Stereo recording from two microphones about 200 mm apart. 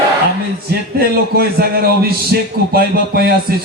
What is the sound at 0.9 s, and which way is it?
A man's voice, 50° right (ahead or behind).